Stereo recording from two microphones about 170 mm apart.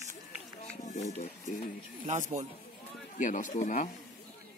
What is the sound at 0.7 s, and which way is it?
Speech, 45° left (ahead or behind).